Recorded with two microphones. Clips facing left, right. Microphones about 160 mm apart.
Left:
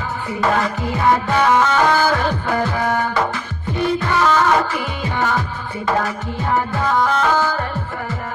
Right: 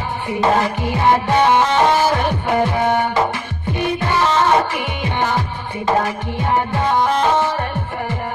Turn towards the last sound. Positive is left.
turn(degrees=-25)  # may be behind; listen again after turning